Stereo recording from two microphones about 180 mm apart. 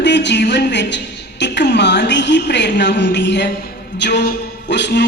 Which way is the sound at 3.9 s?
70° left (ahead or behind).